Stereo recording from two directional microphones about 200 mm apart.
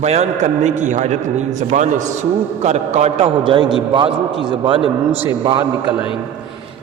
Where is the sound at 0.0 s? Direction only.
30° right (ahead or behind).